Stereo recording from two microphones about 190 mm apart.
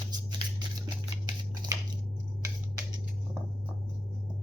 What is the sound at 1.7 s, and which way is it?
Squish, 20° right (ahead or behind).